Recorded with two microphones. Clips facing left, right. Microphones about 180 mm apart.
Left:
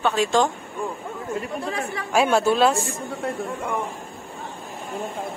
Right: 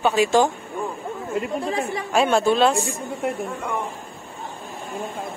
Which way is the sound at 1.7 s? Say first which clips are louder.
Right 4 dB; 25° right (ahead or behind).